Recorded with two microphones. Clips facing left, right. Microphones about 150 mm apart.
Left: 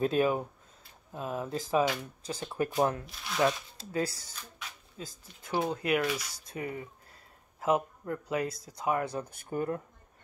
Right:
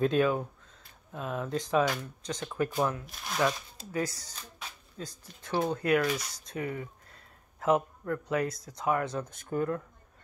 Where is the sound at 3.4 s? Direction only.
30° left (ahead or behind).